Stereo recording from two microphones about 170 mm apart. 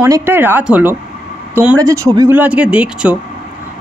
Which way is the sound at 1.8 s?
20° right (ahead or behind).